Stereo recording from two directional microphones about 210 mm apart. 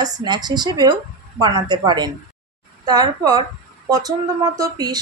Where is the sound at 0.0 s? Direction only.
20° right (ahead or behind).